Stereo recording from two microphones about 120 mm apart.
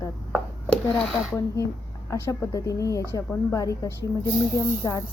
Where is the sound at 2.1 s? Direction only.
25° left (ahead or behind).